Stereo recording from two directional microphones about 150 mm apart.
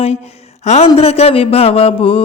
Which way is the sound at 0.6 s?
50° left (ahead or behind).